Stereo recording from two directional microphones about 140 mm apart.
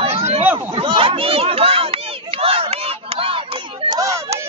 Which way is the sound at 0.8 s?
40° right (ahead or behind).